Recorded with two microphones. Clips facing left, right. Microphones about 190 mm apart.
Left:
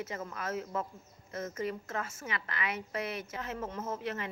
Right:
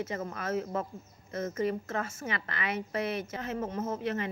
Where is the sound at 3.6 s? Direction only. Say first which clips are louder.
Right 5 dB; 50° right (ahead or behind).